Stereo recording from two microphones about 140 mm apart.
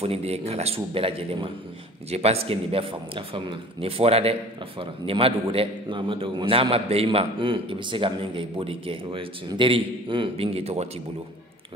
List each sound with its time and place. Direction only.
0.0 s a man's voice: 45° right (ahead or behind)